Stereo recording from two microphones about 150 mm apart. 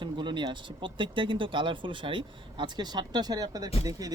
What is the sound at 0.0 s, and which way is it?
Speech, 30° right (ahead or behind).